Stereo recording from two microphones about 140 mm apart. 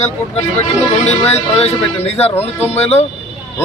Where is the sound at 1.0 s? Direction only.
50° left (ahead or behind).